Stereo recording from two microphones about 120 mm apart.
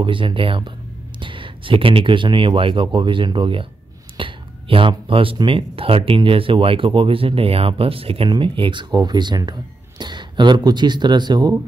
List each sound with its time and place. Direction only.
0.0 s speech: 45° right (ahead or behind)